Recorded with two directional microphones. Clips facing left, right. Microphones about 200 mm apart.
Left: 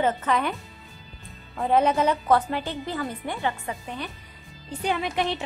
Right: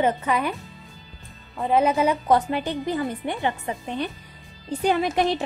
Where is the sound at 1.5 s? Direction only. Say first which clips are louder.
Right 1 dB; 5° right (ahead or behind); by 4.0 s 25° right (ahead or behind).